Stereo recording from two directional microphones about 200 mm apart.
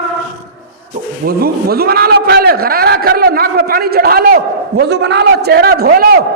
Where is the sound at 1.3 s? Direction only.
50° right (ahead or behind).